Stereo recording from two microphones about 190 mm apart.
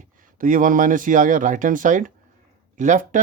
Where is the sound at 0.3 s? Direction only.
45° right (ahead or behind).